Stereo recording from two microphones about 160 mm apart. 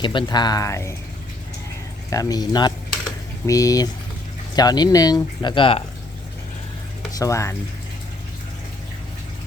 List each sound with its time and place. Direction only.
0.0 s speech: 30° left (ahead or behind)
2.0 s speech: 20° left (ahead or behind)
7.2 s speech: 20° left (ahead or behind)